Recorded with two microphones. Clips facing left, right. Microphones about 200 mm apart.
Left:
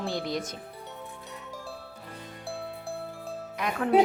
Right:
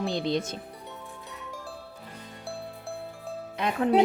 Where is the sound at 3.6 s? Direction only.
25° right (ahead or behind).